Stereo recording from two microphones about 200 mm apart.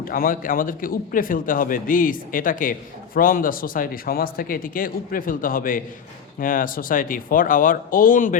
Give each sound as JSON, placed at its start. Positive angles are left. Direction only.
{"t": 0.0, "sound": "speech", "side_deg": 45}